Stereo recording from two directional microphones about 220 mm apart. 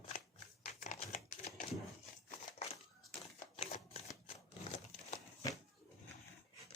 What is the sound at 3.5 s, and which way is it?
Typewriter, 30° left (ahead or behind).